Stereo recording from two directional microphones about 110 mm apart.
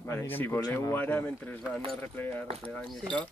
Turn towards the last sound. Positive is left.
turn(degrees=10)  # may be behind; listen again after turning